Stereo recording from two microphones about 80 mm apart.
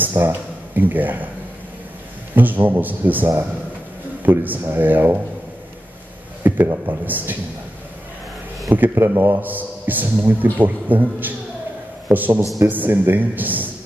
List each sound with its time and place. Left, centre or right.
0.0 s speech: right
2.3 s a man's voice: right
6.4 s a man's voice: right
8.9 s a man's voice: right